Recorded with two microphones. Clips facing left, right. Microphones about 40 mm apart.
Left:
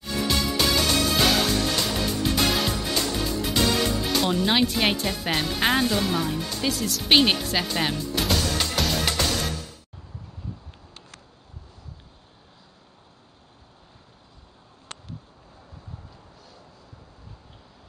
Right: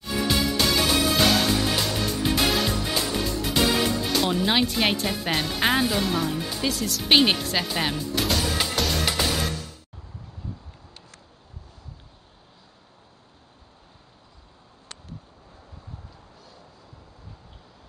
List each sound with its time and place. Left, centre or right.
0.0 s music: centre
2.9 s speech: centre
8.5 s music: centre
8.7 s music: centre